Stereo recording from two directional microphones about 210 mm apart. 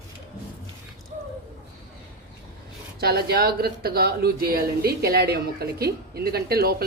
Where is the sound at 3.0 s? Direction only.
50° right (ahead or behind).